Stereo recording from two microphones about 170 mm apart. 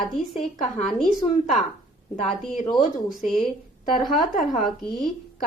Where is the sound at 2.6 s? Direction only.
20° left (ahead or behind).